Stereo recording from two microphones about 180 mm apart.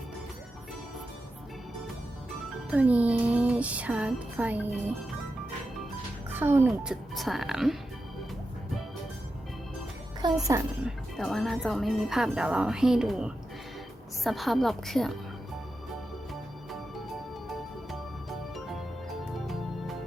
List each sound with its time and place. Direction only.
2.6 s music: 5° right (ahead or behind)
6.3 s speech: 10° right (ahead or behind)
6.7 s speech: centre (ahead or behind)
10.2 s a woman's voice: 25° right (ahead or behind)
10.8 s speech: centre (ahead or behind)